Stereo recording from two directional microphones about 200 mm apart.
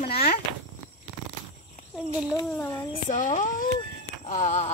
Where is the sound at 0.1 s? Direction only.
50° left (ahead or behind).